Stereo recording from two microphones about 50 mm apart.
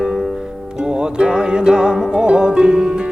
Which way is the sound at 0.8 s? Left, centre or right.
Centre.